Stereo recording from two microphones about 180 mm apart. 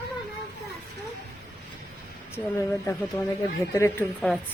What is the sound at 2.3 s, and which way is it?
Speech, 15° left (ahead or behind).